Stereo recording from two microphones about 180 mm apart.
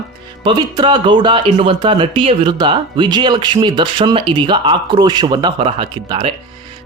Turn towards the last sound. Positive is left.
turn(degrees=-30)  # may be behind; listen again after turning